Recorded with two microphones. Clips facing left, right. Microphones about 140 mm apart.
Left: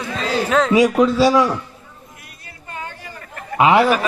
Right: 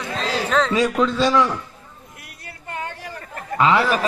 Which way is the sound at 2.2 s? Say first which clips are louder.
Right 6 dB; 70° right (ahead or behind).